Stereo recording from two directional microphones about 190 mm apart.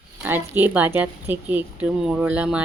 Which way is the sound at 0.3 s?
10° right (ahead or behind).